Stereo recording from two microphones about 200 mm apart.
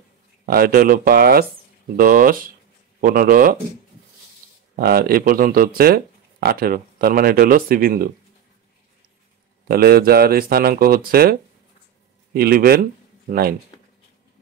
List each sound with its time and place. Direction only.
0.5 s speech: 50° right (ahead or behind)
4.7 s speech: 50° right (ahead or behind)
9.7 s speech: 50° right (ahead or behind)
12.4 s speech: 50° right (ahead or behind)